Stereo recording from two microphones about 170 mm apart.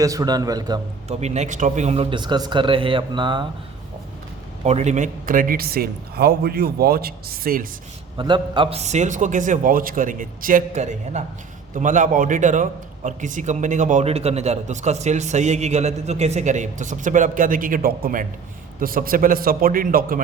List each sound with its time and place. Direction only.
0.0 s a man's voice: 20° right (ahead or behind)
1.0 s a man's voice: 40° right (ahead or behind)
4.6 s speech: 40° right (ahead or behind); by 7.7 s 60° right (ahead or behind)
8.2 s a man's voice: 30° right (ahead or behind)
8.8 s a man's voice: 45° right (ahead or behind)